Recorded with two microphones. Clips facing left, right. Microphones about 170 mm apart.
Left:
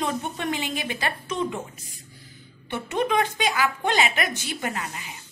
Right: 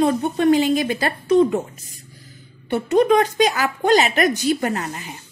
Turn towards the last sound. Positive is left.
turn(degrees=-45)  # may be behind; listen again after turning